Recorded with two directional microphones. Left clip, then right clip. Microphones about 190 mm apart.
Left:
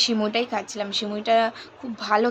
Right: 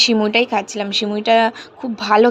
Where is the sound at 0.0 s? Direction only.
30° right (ahead or behind).